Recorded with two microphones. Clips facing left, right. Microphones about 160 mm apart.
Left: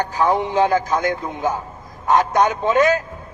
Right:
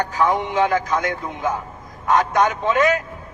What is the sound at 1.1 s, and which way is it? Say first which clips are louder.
A man's voice: left 2 dB; 20° left (ahead or behind).